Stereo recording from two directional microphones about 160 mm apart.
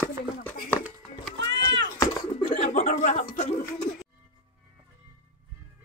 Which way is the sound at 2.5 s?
50° left (ahead or behind).